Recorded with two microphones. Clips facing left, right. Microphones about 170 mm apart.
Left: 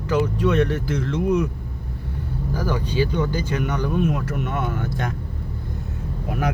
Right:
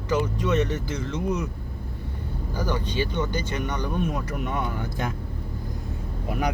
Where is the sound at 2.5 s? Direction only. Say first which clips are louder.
Left 4 dB; 5° left (ahead or behind).